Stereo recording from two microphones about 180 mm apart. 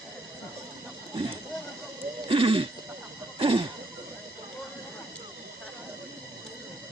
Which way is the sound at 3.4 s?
30° right (ahead or behind).